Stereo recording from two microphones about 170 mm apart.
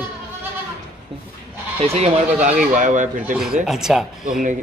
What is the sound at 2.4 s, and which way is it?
Speech, 50° right (ahead or behind).